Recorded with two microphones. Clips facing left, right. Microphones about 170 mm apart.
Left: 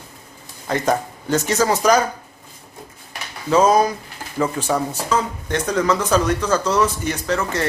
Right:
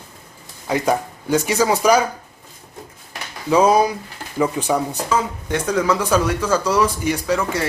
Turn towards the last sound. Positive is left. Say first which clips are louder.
# right 2 dB
turn(degrees=-10)  # may be behind; listen again after turning